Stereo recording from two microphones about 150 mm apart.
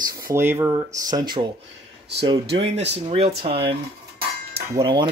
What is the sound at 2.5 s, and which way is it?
Speech, 45° right (ahead or behind).